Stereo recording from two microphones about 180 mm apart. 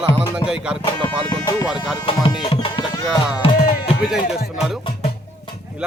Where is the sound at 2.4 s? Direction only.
30° left (ahead or behind).